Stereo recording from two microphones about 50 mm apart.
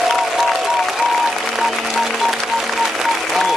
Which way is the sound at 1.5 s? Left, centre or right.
Centre.